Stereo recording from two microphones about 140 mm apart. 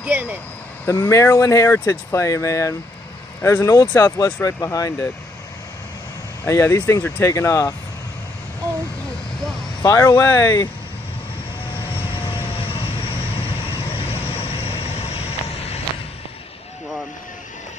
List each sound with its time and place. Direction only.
0.0 s speech: 10° right (ahead or behind)
0.8 s speech: 15° left (ahead or behind)
6.4 s speech: 20° left (ahead or behind)
9.9 s speech: 15° left (ahead or behind)
12.5 s vehicle: 40° left (ahead or behind)
14.2 s vehicle: 45° left (ahead or behind)